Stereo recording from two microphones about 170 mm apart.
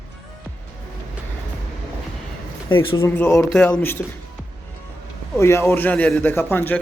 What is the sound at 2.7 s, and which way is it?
Speech, 30° left (ahead or behind).